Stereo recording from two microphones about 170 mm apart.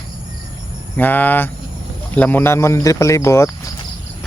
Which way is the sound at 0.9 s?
10° left (ahead or behind).